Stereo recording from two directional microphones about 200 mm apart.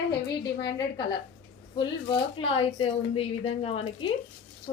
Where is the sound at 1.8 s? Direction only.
25° left (ahead or behind).